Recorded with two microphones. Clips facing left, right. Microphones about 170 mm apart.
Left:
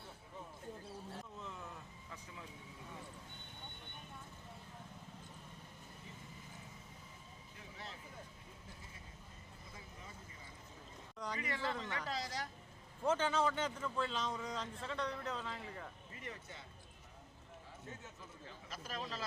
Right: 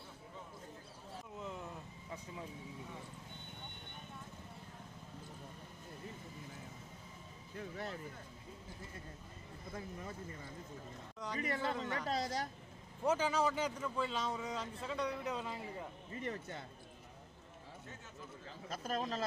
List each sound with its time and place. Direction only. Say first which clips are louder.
1.4 s vehicle: right 4 dB; 20° right (ahead or behind)
7.5 s a sound: right 10 dB; 55° right (ahead or behind)
9.7 s speech: right 11 dB; 55° right (ahead or behind)
11.3 s speech: right 4 dB; 40° right (ahead or behind)
13.1 s a man's voice: right 1 dB; 10° right (ahead or behind)
16.1 s speech: right 10 dB; 40° right (ahead or behind)
18.7 s speech: right 7 dB; 45° right (ahead or behind)